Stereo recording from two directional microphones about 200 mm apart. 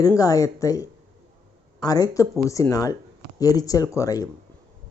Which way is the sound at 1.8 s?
15° left (ahead or behind).